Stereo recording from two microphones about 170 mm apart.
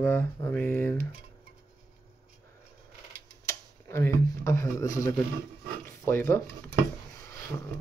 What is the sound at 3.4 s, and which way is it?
Speech, 15° left (ahead or behind).